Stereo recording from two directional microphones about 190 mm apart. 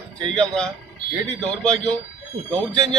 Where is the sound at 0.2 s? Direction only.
5° left (ahead or behind).